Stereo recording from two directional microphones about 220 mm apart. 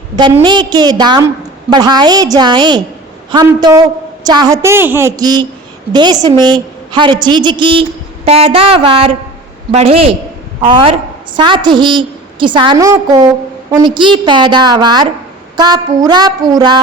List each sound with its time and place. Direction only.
0.2 s a woman's voice: 20° right (ahead or behind)